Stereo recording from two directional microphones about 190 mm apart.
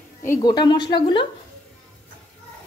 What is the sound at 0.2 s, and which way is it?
A woman's voice, 15° left (ahead or behind).